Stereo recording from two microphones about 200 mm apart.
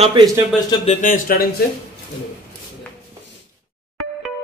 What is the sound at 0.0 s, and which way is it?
Speech, 25° right (ahead or behind).